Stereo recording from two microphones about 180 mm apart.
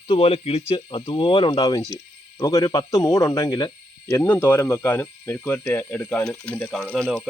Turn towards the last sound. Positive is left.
turn(degrees=5)  # may be behind; listen again after turning